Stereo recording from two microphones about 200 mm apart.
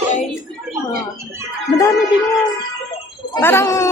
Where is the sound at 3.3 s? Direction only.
15° left (ahead or behind).